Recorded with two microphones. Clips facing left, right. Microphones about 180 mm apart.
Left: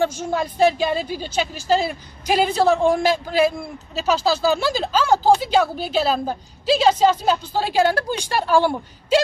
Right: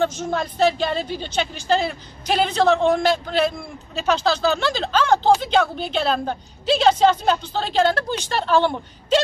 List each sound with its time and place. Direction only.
0.0 s speech: 10° left (ahead or behind)